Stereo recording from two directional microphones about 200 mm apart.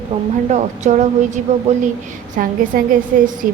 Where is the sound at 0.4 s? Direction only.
35° right (ahead or behind).